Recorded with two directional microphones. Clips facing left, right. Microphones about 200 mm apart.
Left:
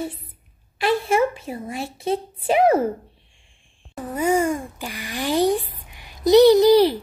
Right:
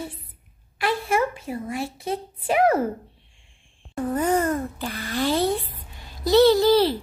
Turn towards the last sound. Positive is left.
turn(degrees=15)  # may be behind; listen again after turning